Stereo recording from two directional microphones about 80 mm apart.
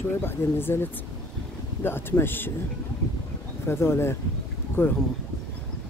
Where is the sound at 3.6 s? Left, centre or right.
Left.